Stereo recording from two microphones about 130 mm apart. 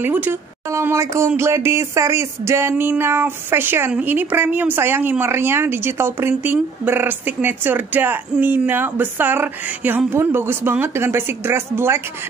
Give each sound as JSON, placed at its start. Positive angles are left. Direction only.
{"t": 0.0, "sound": "a woman's voice", "side_deg": -15}